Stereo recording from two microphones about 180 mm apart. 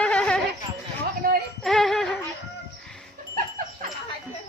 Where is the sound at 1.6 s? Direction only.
Centre (ahead or behind).